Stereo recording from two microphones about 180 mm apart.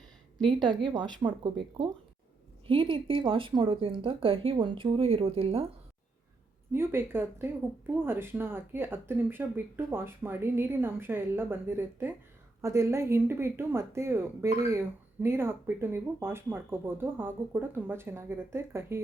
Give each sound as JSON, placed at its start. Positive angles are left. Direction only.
{"t": 0.4, "sound": "speech", "side_deg": -25}
{"t": 6.7, "sound": "speech", "side_deg": -15}